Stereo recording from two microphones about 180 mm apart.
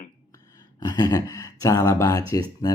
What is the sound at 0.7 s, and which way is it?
Speech, 20° left (ahead or behind).